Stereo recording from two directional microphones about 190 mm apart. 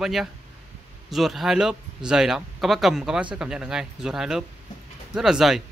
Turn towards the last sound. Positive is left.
turn(degrees=0)  # may be behind; listen again after turning